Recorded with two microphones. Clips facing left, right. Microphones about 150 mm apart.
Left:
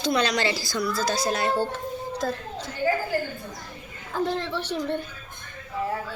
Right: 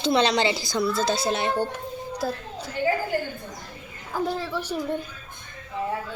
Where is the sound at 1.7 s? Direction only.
10° right (ahead or behind).